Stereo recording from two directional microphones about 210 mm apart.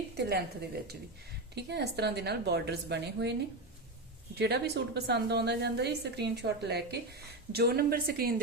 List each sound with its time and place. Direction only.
0.2 s a woman's voice: 50° right (ahead or behind)
1.5 s a woman's voice: 55° right (ahead or behind)
4.4 s a woman's voice: 50° right (ahead or behind)